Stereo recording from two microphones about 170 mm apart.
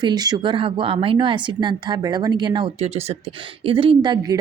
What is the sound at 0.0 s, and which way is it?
Speech, 25° right (ahead or behind).